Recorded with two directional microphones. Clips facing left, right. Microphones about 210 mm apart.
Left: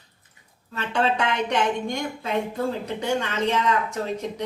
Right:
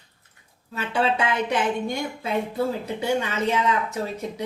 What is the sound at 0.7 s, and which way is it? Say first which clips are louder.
Speech: even; 5° right (ahead or behind).